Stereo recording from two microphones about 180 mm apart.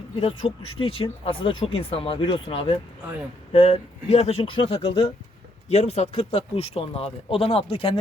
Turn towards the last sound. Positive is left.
turn(degrees=30)  # may be behind; listen again after turning